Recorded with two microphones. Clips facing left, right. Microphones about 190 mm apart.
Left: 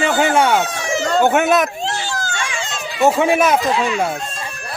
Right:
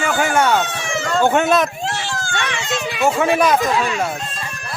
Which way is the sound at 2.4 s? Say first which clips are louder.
Right 3 dB; 60° right (ahead or behind).